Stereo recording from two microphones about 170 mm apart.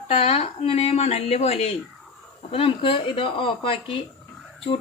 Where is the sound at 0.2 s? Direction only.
35° left (ahead or behind).